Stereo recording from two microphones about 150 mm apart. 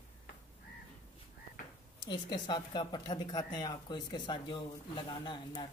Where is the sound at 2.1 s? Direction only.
30° left (ahead or behind).